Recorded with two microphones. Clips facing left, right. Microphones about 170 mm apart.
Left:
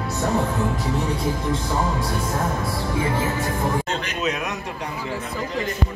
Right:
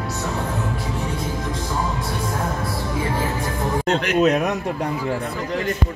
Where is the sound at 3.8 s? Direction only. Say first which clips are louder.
Right 8 dB; 60° right (ahead or behind).